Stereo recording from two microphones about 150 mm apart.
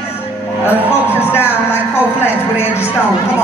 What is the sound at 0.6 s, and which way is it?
Music, 15° left (ahead or behind).